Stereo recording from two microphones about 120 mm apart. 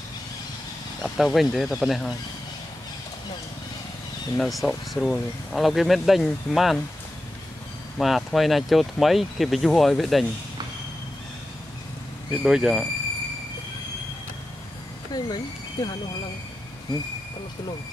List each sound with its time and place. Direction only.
1.0 s speech: centre (ahead or behind)
4.4 s speech: centre (ahead or behind)
8.0 s speech: centre (ahead or behind)
12.4 s speech: 5° right (ahead or behind)
15.1 s speech: 35° left (ahead or behind)